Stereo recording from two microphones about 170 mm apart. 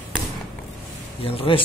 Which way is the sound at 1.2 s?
35° left (ahead or behind).